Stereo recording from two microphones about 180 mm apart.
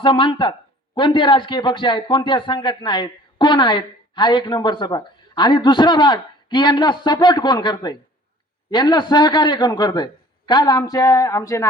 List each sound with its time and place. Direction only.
0.0 s a man's voice: 30° left (ahead or behind)